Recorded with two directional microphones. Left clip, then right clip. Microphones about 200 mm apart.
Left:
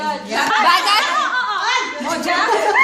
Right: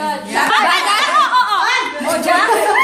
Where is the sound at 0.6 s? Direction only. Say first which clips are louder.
Even; 45° left (ahead or behind).